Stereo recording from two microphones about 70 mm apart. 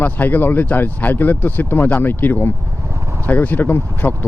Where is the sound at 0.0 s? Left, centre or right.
Left.